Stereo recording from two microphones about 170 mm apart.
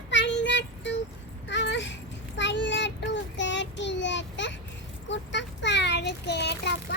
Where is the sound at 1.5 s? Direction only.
90° left.